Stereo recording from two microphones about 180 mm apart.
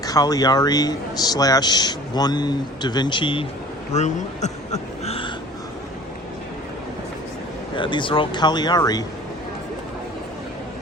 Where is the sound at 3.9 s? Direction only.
40° left (ahead or behind).